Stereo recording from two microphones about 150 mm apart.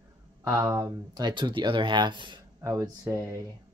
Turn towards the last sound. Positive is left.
turn(degrees=-20)  # may be behind; listen again after turning